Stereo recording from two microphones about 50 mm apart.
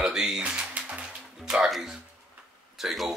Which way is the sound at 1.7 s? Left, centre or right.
Centre.